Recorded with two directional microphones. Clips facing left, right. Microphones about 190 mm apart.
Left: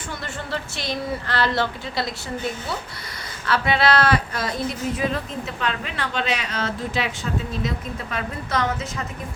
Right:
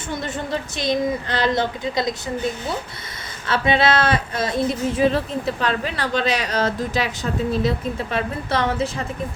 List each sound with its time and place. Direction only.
0.5 s a woman's voice: 20° right (ahead or behind)
3.4 s a woman's voice: 25° right (ahead or behind)